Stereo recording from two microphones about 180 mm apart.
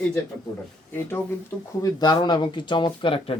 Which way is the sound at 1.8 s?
25° left (ahead or behind).